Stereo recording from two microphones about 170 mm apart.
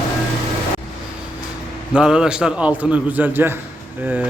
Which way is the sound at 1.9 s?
5° right (ahead or behind).